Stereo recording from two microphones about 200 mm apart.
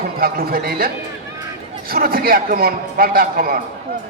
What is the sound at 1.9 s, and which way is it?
A man's voice, 45° right (ahead or behind).